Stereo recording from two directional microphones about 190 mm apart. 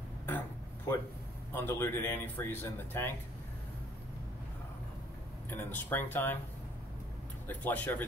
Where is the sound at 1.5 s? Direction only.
10° left (ahead or behind).